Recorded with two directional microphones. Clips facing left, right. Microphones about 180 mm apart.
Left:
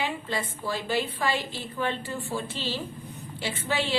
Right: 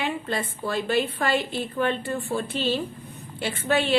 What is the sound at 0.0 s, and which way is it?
A woman's voice, 55° right (ahead or behind).